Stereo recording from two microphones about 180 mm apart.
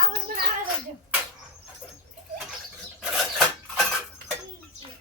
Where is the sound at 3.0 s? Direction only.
Centre (ahead or behind).